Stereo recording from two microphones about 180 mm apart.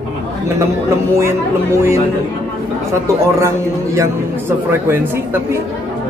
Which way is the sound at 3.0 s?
15° right (ahead or behind).